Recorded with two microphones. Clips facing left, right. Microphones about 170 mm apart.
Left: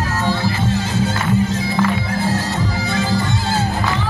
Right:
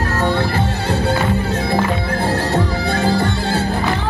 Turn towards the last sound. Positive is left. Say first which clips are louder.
# right 2 dB
turn(degrees=-60)  # may be behind; listen again after turning